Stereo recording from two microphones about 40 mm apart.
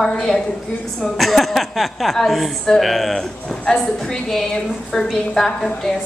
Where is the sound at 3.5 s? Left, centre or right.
Centre.